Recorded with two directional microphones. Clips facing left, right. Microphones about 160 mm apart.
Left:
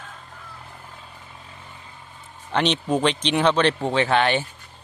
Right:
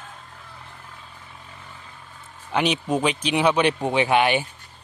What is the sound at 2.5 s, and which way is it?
Speech, 10° right (ahead or behind).